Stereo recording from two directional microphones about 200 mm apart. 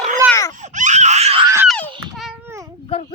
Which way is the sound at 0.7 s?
35° right (ahead or behind).